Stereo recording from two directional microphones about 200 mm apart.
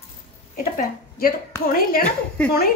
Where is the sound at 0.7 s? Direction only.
45° left (ahead or behind).